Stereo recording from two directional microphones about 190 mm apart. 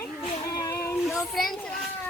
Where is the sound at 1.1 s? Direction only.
Centre (ahead or behind).